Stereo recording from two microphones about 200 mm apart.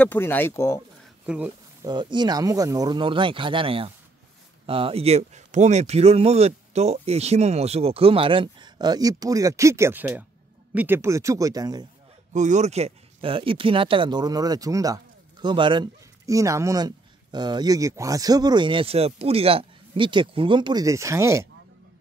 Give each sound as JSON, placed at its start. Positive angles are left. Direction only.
{"t": 0.0, "sound": "speech", "side_deg": 10}
{"t": 1.2, "sound": "a sound", "side_deg": -5}
{"t": 1.9, "sound": "speech", "side_deg": -20}
{"t": 12.3, "sound": "speech", "side_deg": -35}